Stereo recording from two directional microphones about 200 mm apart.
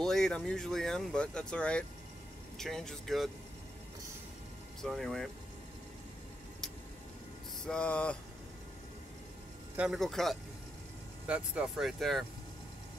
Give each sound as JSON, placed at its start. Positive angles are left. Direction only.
{"t": 0.0, "sound": "speech", "side_deg": 0}
{"t": 4.8, "sound": "speech", "side_deg": 0}
{"t": 7.6, "sound": "speech", "side_deg": 5}
{"t": 9.8, "sound": "speech", "side_deg": 0}